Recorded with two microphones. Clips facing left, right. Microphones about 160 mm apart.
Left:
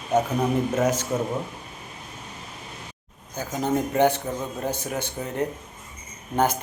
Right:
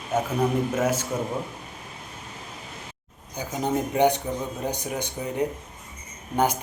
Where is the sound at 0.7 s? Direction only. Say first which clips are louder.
Left 1 dB; 10° right (ahead or behind).